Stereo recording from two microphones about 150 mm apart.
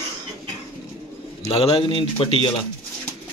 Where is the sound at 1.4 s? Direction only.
40° left (ahead or behind).